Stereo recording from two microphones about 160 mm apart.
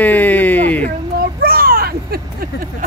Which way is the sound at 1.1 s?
65° right (ahead or behind).